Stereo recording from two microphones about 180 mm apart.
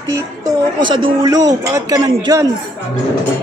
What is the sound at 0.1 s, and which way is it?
Speech, 20° right (ahead or behind).